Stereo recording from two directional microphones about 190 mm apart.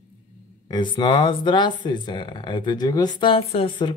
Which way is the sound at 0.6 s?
25° left (ahead or behind).